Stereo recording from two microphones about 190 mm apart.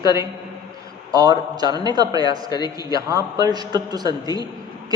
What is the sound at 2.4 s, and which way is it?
Speech, 20° left (ahead or behind).